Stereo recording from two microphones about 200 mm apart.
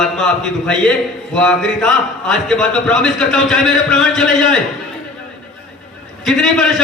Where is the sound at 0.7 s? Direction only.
5° left (ahead or behind).